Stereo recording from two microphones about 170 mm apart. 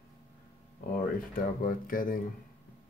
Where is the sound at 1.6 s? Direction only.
55° left (ahead or behind).